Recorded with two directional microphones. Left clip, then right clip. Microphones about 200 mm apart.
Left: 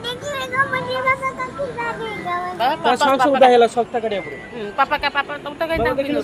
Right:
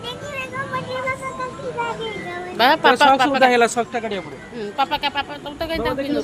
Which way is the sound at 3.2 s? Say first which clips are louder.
Left 3 dB; 35° right (ahead or behind).